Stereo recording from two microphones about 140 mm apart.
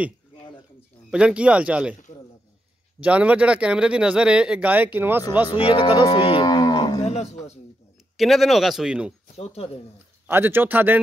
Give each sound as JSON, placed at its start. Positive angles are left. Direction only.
{"t": 1.1, "sound": "speech", "side_deg": -10}
{"t": 3.0, "sound": "speech", "side_deg": -10}
{"t": 5.5, "sound": "cattle", "side_deg": 35}
{"t": 7.0, "sound": "a sound", "side_deg": 50}
{"t": 8.2, "sound": "speech", "side_deg": 0}
{"t": 9.3, "sound": "speech", "side_deg": 45}
{"t": 10.2, "sound": "speech", "side_deg": -15}